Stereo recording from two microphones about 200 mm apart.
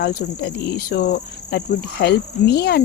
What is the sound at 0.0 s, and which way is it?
Speech, 55° left (ahead or behind).